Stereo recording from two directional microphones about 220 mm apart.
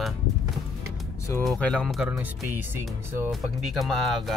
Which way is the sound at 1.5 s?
5° left (ahead or behind).